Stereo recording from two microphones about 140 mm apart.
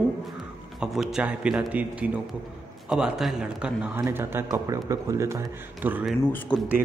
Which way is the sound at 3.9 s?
20° right (ahead or behind).